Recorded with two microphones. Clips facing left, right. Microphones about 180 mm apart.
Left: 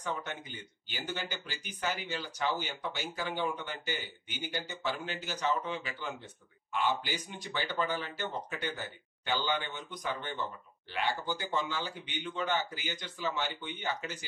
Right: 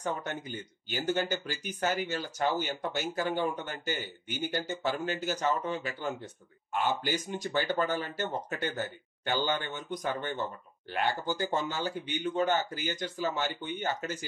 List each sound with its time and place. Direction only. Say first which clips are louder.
0.0 s speech: right 4 dB; 45° right (ahead or behind)